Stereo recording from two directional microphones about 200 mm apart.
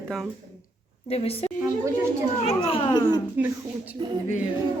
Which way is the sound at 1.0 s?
30° left (ahead or behind).